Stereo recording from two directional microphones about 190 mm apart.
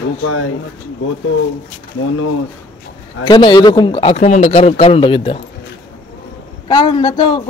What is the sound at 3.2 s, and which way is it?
Speech, 25° left (ahead or behind).